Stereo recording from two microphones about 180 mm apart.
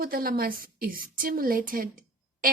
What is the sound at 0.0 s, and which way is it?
Speech, 55° right (ahead or behind).